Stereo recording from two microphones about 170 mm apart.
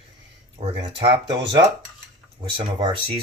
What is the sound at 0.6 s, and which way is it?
Speech, 35° right (ahead or behind).